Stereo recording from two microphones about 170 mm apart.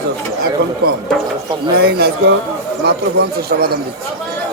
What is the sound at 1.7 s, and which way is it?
Speech, 70° right (ahead or behind).